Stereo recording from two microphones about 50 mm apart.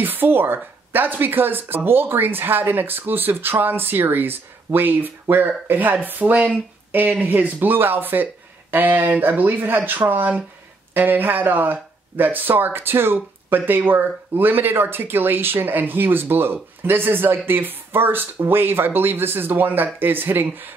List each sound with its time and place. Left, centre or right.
0.0 s speech: right